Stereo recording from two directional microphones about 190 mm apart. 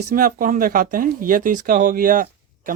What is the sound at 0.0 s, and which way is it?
Speech, 50° right (ahead or behind).